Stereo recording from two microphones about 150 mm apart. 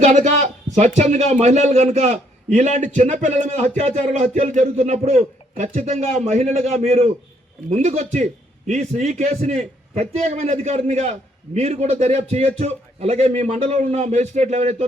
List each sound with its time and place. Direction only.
0.0 s speech: 50° right (ahead or behind)